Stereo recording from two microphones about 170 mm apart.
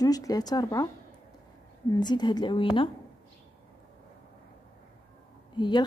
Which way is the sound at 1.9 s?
25° left (ahead or behind).